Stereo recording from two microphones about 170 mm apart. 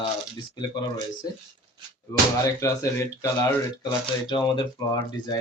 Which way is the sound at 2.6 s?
20° left (ahead or behind).